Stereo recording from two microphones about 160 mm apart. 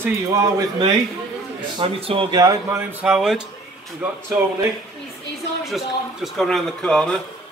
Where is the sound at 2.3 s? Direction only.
20° right (ahead or behind).